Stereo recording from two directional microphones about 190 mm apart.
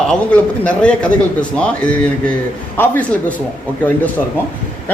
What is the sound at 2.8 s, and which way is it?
Speech, 10° left (ahead or behind).